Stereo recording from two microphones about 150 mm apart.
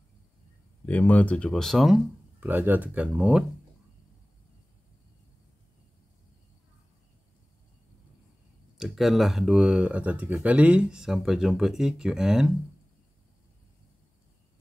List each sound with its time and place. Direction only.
0.8 s speech: 10° left (ahead or behind)
2.4 s speech: 15° right (ahead or behind)
8.7 s speech: centre (ahead or behind)